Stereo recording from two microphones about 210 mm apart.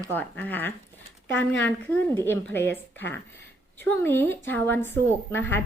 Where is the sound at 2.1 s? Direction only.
10° left (ahead or behind).